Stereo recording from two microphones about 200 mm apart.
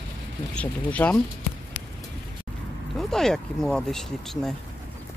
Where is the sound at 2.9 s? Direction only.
Centre (ahead or behind).